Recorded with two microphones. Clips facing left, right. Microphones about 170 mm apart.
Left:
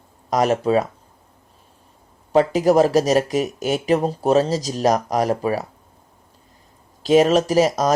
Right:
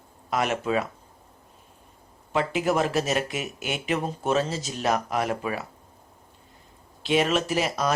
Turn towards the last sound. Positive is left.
turn(degrees=40)  # may be behind; listen again after turning